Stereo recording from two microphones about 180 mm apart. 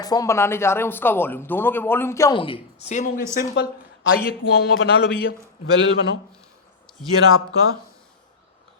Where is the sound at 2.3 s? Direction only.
30° left (ahead or behind).